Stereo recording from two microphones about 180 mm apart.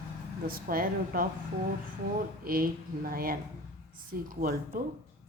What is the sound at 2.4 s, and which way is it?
A woman's voice, 55° right (ahead or behind).